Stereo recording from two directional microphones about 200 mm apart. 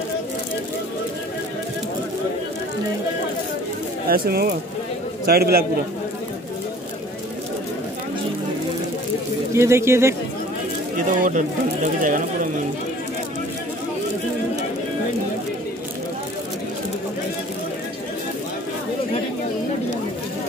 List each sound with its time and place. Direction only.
4.1 s speech: 50° right (ahead or behind)
9.6 s speech: 15° right (ahead or behind)
11.0 s speech: 40° right (ahead or behind)